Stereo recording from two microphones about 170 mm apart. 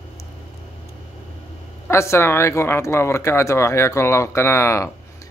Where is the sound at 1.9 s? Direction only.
15° left (ahead or behind).